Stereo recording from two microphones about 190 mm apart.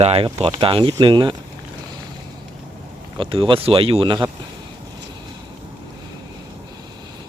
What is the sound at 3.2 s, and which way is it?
Speech, 25° right (ahead or behind).